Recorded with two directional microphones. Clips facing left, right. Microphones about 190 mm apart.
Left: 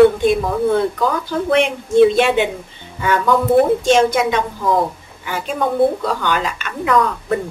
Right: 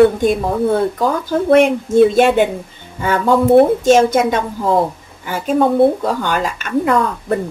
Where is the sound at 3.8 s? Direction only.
45° right (ahead or behind).